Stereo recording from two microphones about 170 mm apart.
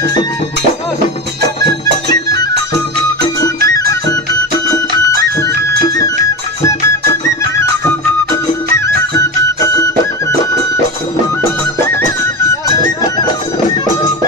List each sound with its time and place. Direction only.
1.7 s music: 25° left (ahead or behind)
5.9 s music: 20° left (ahead or behind)
8.7 s music: 20° left (ahead or behind)
12.6 s music: 20° left (ahead or behind)